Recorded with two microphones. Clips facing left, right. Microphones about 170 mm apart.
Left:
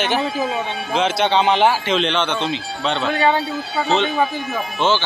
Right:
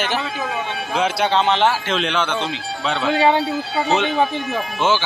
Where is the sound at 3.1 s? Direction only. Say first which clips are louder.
Right 3 dB; 25° right (ahead or behind).